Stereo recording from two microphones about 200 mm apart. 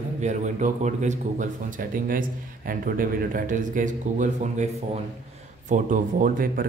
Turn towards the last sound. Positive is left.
turn(degrees=-45)  # may be behind; listen again after turning